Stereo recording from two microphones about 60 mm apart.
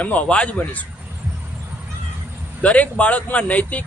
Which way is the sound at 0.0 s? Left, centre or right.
Left.